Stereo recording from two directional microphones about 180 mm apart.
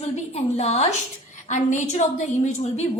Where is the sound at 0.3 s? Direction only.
35° left (ahead or behind).